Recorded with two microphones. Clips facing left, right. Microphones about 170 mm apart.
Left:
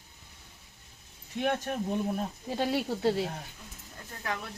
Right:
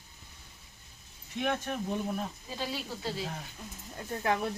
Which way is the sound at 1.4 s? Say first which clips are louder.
Left 2 dB; 35° left (ahead or behind).